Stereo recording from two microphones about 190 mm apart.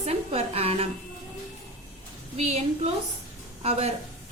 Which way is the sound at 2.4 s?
35° right (ahead or behind).